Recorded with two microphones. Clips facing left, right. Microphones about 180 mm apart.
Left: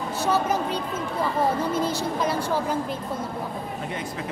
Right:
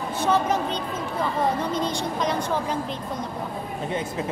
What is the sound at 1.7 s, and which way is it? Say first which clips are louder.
Speech: left 1 dB; 5° left (ahead or behind).